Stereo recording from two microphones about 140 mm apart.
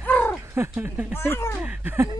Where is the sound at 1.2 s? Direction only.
15° left (ahead or behind).